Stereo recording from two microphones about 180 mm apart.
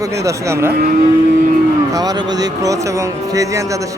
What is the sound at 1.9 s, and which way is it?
Speech, 20° right (ahead or behind).